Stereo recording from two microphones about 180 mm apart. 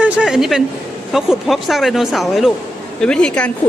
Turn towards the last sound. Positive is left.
turn(degrees=5)  # may be behind; listen again after turning